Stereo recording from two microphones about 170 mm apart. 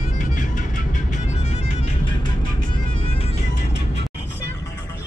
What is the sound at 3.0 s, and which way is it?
Music, 35° left (ahead or behind).